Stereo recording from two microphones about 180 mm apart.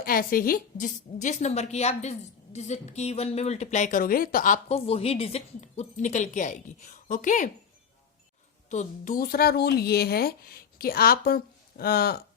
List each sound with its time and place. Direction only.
0.0 s a woman's voice: 55° left (ahead or behind)
4.7 s a woman's voice: 35° left (ahead or behind)
8.7 s speech: 45° left (ahead or behind)